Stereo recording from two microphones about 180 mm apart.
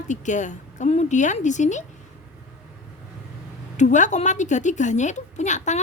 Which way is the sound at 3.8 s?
40° left (ahead or behind).